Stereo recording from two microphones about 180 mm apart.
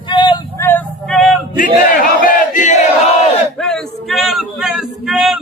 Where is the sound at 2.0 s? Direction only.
50° left (ahead or behind).